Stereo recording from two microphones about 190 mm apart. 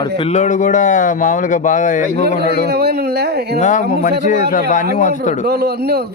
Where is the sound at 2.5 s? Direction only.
60° right (ahead or behind).